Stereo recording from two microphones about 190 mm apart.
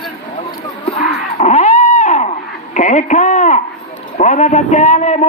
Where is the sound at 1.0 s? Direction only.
40° left (ahead or behind).